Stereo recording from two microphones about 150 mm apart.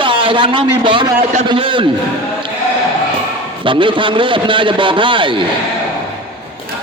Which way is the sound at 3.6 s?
35° right (ahead or behind).